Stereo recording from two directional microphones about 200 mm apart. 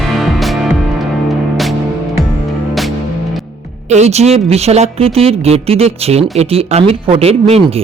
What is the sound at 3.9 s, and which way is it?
A woman's voice, 35° right (ahead or behind).